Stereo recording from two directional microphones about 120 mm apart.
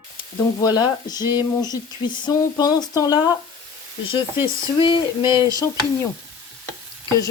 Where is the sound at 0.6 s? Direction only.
35° left (ahead or behind).